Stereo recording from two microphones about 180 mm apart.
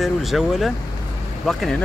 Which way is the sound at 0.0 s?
Centre (ahead or behind).